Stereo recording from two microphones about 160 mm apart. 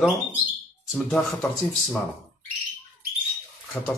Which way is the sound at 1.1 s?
Centre (ahead or behind).